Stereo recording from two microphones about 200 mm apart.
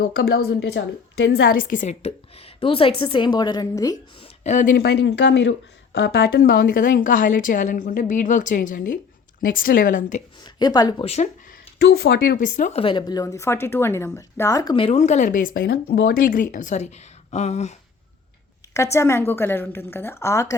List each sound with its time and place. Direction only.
0.0 s a woman's voice: 50° left (ahead or behind); by 4.3 s 20° left (ahead or behind)
4.4 s speech: 40° left (ahead or behind)
10.4 s a woman's voice: 20° left (ahead or behind)
11.8 s speech: 55° left (ahead or behind); by 12.8 s 40° left (ahead or behind)
12.8 s a woman's voice: 25° left (ahead or behind)
18.6 s a sound: 15° left (ahead or behind)
18.9 s a woman's voice: 10° left (ahead or behind)